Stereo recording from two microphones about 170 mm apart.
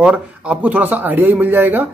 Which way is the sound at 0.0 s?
10° right (ahead or behind).